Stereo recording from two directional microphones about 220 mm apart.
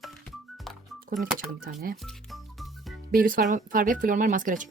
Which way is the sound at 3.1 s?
40° right (ahead or behind).